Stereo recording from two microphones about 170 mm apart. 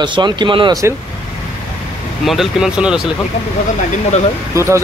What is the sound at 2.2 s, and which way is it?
Speech, centre (ahead or behind).